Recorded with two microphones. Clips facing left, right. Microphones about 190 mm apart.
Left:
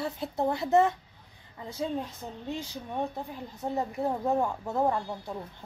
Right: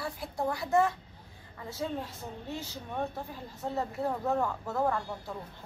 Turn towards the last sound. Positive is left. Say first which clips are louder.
# left 2 dB
turn(degrees=20)  # may be behind; listen again after turning